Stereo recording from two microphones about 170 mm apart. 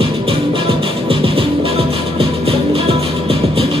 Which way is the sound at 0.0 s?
35° right (ahead or behind).